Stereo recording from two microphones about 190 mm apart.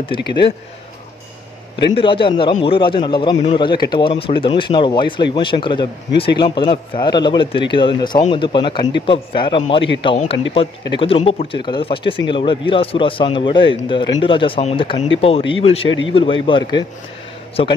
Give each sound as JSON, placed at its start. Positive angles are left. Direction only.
{"t": 0.1, "sound": "speech", "side_deg": 25}
{"t": 2.0, "sound": "speech", "side_deg": 25}